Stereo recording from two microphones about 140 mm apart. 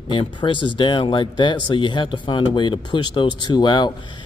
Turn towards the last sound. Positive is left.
turn(degrees=30)  # may be behind; listen again after turning